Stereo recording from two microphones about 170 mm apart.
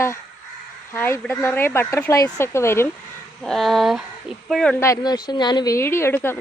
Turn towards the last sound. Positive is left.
turn(degrees=15)  # may be behind; listen again after turning